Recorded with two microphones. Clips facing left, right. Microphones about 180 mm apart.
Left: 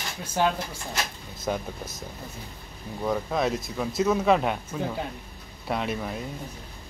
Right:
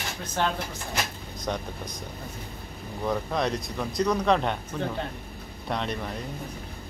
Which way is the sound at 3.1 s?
5° left (ahead or behind).